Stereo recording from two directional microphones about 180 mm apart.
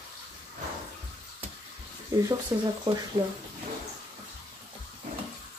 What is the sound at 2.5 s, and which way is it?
Speech, 15° right (ahead or behind).